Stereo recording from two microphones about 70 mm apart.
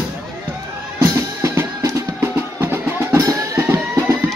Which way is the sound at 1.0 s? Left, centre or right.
Right.